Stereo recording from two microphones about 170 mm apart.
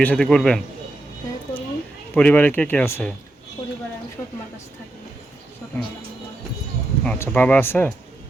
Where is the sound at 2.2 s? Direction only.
10° left (ahead or behind).